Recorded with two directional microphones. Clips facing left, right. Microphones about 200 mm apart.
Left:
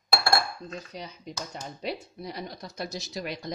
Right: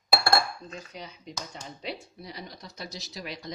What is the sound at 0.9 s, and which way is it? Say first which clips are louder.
Speech: left 2 dB; 40° left (ahead or behind).